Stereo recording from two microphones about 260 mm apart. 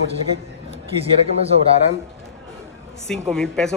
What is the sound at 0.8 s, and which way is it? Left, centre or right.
Speech, right.